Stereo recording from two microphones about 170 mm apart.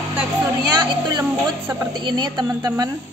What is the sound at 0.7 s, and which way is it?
A woman's voice, 25° right (ahead or behind).